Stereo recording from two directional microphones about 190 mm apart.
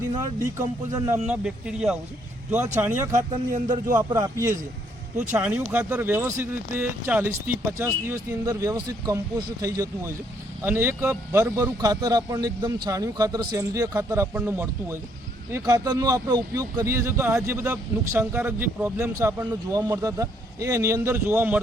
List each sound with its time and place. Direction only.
0.2 s speech: 15° right (ahead or behind)
1.3 s speech: 5° right (ahead or behind)
3.1 s speech: 40° right (ahead or behind)
3.9 s a man's voice: 20° right (ahead or behind)